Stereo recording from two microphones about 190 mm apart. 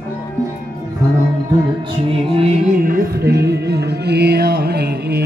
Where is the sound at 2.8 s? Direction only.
45° right (ahead or behind).